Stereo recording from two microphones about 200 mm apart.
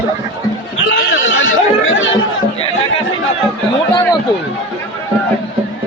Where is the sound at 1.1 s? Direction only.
75° left (ahead or behind).